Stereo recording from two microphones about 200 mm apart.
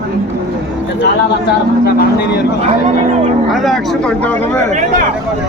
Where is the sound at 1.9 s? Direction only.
55° left (ahead or behind).